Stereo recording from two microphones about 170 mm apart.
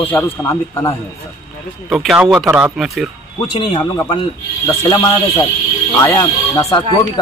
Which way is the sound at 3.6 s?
30° left (ahead or behind).